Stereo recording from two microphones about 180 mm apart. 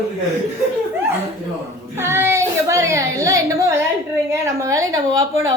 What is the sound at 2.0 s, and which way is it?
Speech, 15° right (ahead or behind).